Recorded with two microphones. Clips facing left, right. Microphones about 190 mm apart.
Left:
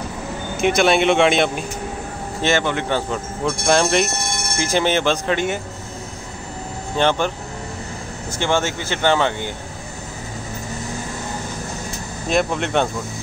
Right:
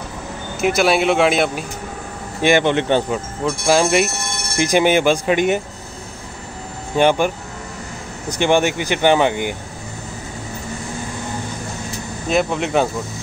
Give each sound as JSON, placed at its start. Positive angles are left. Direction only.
{"t": 0.6, "sound": "speech", "side_deg": -5}
{"t": 2.4, "sound": "speech", "side_deg": -20}
{"t": 3.1, "sound": "speech", "side_deg": -5}
{"t": 7.0, "sound": "speech", "side_deg": -10}
{"t": 12.3, "sound": "speech", "side_deg": 0}